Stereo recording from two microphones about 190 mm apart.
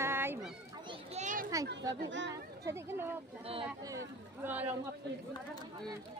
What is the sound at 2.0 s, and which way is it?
Speech, 75° right (ahead or behind).